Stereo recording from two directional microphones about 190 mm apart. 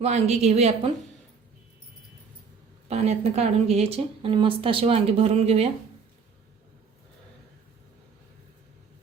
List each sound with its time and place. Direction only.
0.0 s a woman's voice: 35° right (ahead or behind)
2.9 s a woman's voice: 35° right (ahead or behind)